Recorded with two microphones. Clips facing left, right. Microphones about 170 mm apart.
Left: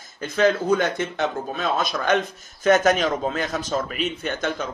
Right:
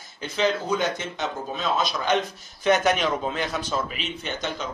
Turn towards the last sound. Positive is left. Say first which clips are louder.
# left 5 dB
turn(degrees=45)  # may be behind; listen again after turning